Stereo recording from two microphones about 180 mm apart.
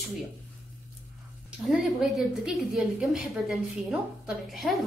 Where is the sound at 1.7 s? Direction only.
Centre (ahead or behind).